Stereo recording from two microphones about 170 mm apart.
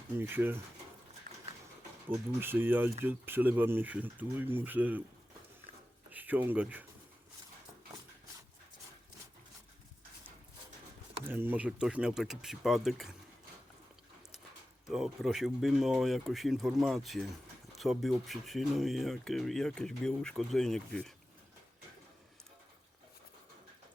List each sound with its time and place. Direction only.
0.2 s speech: 10° right (ahead or behind)
1.3 s a sound: 55° right (ahead or behind)
2.0 s speech: 10° right (ahead or behind)
6.1 s speech: 10° right (ahead or behind)
11.2 s speech: 10° right (ahead or behind)
14.8 s speech: centre (ahead or behind)